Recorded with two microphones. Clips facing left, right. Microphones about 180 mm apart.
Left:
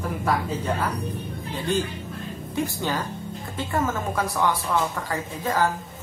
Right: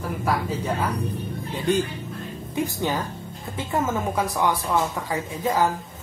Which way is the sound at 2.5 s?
20° right (ahead or behind).